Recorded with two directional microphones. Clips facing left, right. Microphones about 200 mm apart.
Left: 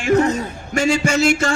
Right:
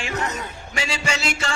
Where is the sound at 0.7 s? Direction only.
50° left (ahead or behind).